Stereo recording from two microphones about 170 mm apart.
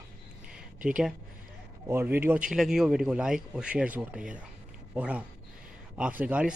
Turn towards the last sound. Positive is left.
turn(degrees=-10)  # may be behind; listen again after turning